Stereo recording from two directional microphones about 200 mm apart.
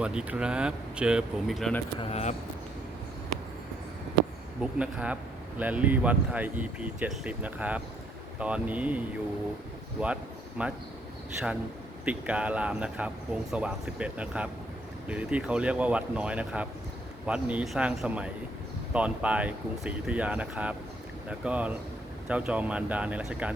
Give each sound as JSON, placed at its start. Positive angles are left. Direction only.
{"t": 0.0, "sound": "speech", "side_deg": -5}
{"t": 2.0, "sound": "speech", "side_deg": 30}
{"t": 4.6, "sound": "speech", "side_deg": -5}
{"t": 10.6, "sound": "speech", "side_deg": -5}
{"t": 12.0, "sound": "speech", "side_deg": -5}